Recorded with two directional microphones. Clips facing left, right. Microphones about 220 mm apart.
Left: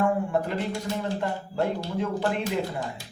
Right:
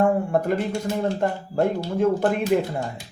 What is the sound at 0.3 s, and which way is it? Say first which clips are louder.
Speech: right 5 dB; 45° right (ahead or behind).